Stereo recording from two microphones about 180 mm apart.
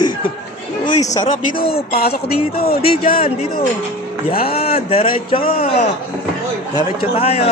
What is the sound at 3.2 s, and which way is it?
Speech, 30° left (ahead or behind).